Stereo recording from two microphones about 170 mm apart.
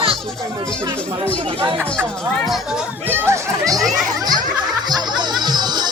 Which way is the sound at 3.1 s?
15° right (ahead or behind).